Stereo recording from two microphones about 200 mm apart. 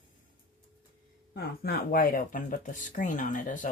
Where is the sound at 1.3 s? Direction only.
50° left (ahead or behind).